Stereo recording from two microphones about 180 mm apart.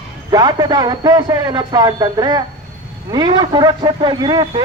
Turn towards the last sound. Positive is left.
turn(degrees=-25)  # may be behind; listen again after turning